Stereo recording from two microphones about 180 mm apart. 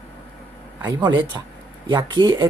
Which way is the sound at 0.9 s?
25° right (ahead or behind).